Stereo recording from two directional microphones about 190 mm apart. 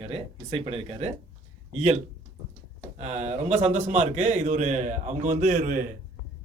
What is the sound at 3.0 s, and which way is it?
Speech, 35° right (ahead or behind).